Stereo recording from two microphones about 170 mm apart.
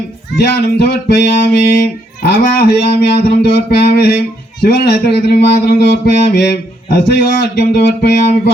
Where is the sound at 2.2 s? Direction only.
75° left (ahead or behind).